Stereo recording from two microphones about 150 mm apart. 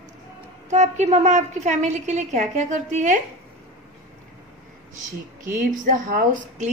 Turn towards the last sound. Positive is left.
turn(degrees=-55)  # may be behind; listen again after turning